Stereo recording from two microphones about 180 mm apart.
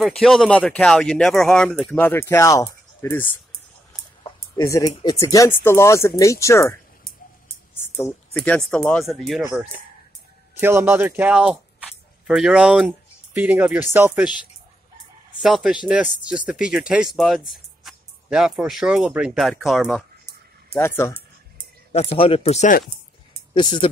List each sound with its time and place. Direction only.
0.0 s speech: centre (ahead or behind)
4.2 s a sound: 20° left (ahead or behind)
5.2 s speech: 15° left (ahead or behind)
8.0 s speech: 10° left (ahead or behind)
10.6 s speech: 15° right (ahead or behind)
20.7 s speech: 15° left (ahead or behind)
21.9 s speech: 30° left (ahead or behind)
23.5 s speech: 25° left (ahead or behind)